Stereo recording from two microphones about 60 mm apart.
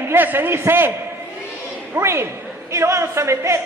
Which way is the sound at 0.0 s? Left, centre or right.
Right.